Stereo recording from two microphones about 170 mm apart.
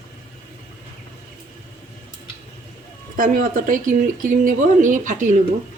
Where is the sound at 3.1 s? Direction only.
55° right (ahead or behind).